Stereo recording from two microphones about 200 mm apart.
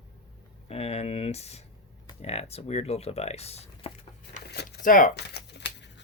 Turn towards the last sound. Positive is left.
turn(degrees=60)  # may be behind; listen again after turning